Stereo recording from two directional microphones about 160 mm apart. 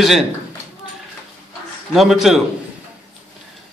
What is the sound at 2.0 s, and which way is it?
Speech, 5° right (ahead or behind).